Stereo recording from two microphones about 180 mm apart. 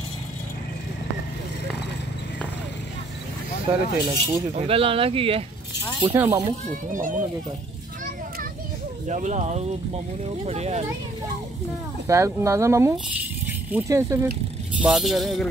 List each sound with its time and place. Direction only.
3.7 s speech: 15° right (ahead or behind)
4.0 s speech: 30° right (ahead or behind)
6.1 s speech: 15° right (ahead or behind)
6.9 s speech: 45° right (ahead or behind)
9.0 s speech: 40° right (ahead or behind)
12.1 s speech: 15° right (ahead or behind)
14.8 s speech: 5° right (ahead or behind)